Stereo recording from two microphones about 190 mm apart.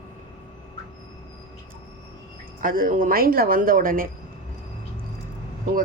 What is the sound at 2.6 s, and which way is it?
Speech, 45° right (ahead or behind).